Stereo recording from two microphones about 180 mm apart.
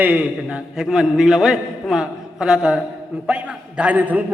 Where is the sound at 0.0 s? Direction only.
10° right (ahead or behind).